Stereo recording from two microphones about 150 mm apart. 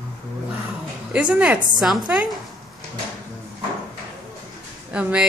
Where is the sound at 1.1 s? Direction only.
10° right (ahead or behind).